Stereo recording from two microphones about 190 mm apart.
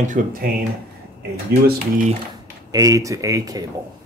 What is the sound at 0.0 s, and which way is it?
Speech, 45° right (ahead or behind).